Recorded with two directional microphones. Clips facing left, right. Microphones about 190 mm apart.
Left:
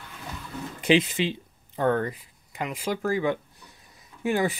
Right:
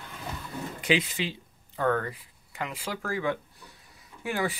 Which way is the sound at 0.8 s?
25° left (ahead or behind).